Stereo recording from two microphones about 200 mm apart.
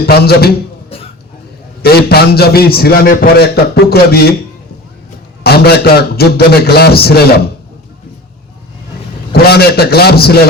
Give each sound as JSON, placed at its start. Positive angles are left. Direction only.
{"t": 0.0, "sound": "a man's voice", "side_deg": 50}
{"t": 1.8, "sound": "a man's voice", "side_deg": 50}
{"t": 5.4, "sound": "a man's voice", "side_deg": 50}
{"t": 9.3, "sound": "a man's voice", "side_deg": 50}